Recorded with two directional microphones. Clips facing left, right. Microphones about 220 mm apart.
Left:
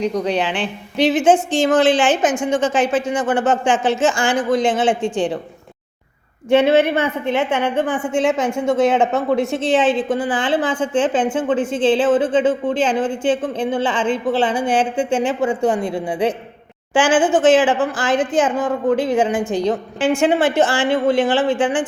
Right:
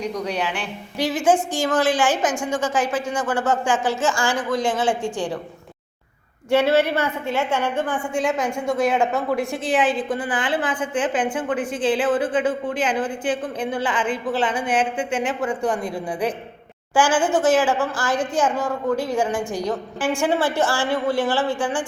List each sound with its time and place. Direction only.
0.0 s speech: 25° left (ahead or behind)
6.5 s speech: 20° left (ahead or behind)